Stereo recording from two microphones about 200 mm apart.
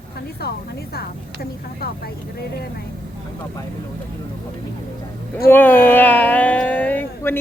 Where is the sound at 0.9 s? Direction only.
50° left (ahead or behind).